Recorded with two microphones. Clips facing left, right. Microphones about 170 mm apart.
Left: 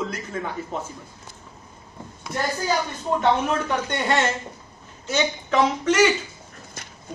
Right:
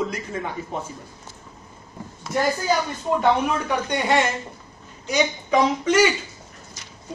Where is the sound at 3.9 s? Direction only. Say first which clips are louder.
Right 3 dB; 10° right (ahead or behind).